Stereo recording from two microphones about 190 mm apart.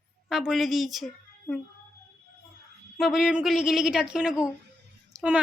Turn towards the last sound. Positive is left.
turn(degrees=-15)  # may be behind; listen again after turning